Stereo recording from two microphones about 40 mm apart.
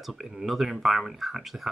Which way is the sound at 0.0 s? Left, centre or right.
Centre.